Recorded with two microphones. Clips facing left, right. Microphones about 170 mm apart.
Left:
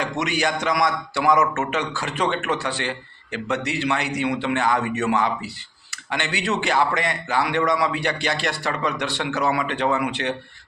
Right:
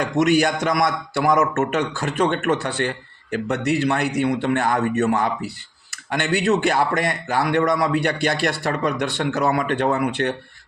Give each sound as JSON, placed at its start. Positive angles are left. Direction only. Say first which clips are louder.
{"t": 0.0, "sound": "a man's voice", "louder": "right 6 dB", "side_deg": -50}